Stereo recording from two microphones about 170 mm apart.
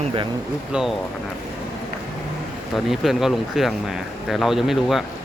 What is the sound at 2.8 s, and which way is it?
Speech, centre (ahead or behind).